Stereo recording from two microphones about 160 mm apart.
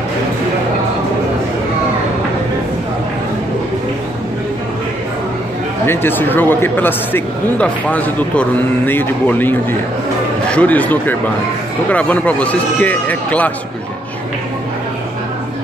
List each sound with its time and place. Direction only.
5.9 s speech: 15° left (ahead or behind)